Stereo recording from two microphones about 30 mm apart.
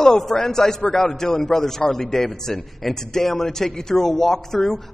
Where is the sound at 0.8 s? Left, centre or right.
Left.